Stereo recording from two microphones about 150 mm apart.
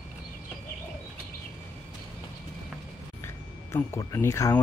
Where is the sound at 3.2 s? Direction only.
15° left (ahead or behind).